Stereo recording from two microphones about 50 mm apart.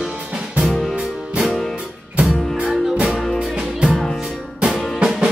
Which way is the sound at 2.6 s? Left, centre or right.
Centre.